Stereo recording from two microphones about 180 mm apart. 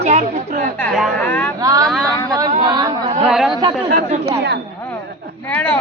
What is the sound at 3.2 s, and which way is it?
Speech, centre (ahead or behind).